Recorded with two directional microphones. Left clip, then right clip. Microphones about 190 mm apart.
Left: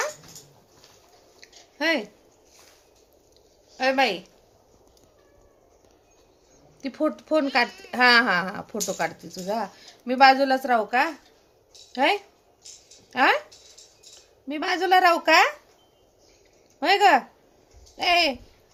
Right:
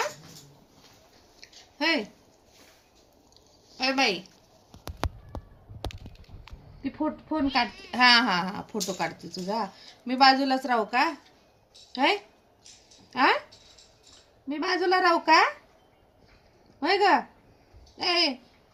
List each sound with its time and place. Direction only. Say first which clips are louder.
1.8 s a woman's voice: left 2 dB; 40° left (ahead or behind)
3.8 s a woman's voice: left 3 dB; 40° left (ahead or behind)
7.0 s speech: left 6 dB; 60° left (ahead or behind)
7.9 s a woman's voice: left 2 dB; 30° left (ahead or behind)
14.4 s a woman's voice: left 1 dB; 40° left (ahead or behind)
16.8 s a woman's voice: left 4 dB; 35° left (ahead or behind)